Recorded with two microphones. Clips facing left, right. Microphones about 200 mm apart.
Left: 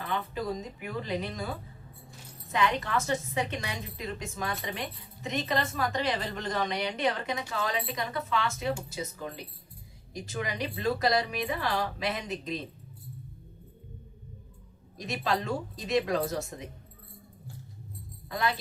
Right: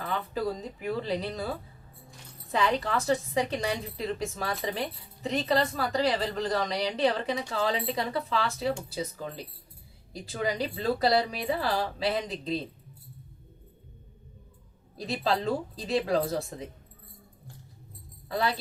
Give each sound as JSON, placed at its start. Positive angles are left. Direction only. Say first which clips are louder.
{"t": 0.0, "sound": "a woman's voice", "louder": "right 2 dB", "side_deg": -35}
{"t": 2.5, "sound": "a woman's voice", "louder": "right 1 dB", "side_deg": -30}
{"t": 14.9, "sound": "a woman's voice", "louder": "right 2 dB", "side_deg": -30}
{"t": 18.3, "sound": "a woman's voice", "louder": "right 2 dB", "side_deg": -35}